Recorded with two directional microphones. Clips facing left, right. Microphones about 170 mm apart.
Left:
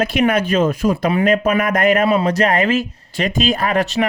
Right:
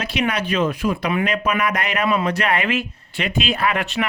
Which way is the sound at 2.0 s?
35° left (ahead or behind).